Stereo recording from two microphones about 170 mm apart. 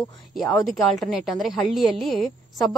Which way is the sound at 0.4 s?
Centre (ahead or behind).